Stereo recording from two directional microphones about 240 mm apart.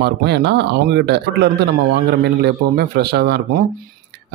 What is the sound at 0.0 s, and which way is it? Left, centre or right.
Speech, right.